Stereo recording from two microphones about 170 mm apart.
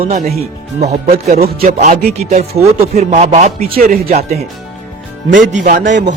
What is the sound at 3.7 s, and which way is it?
Music, 65° right (ahead or behind).